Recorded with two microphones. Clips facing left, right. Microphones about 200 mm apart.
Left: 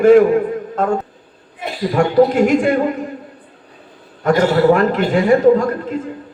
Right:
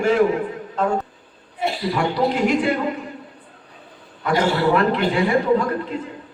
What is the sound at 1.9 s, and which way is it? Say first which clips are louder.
Speech: left 10 dB; 50° left (ahead or behind).